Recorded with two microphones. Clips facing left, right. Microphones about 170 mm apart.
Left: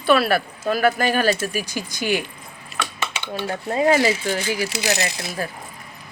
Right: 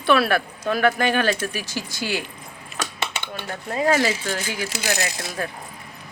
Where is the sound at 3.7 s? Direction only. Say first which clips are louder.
Left 3 dB; 25° left (ahead or behind).